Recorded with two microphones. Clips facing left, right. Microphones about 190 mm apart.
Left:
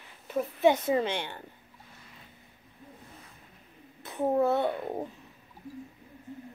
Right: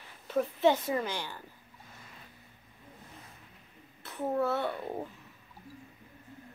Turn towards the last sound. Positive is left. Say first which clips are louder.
# left 4 dB
turn(degrees=15)  # may be behind; listen again after turning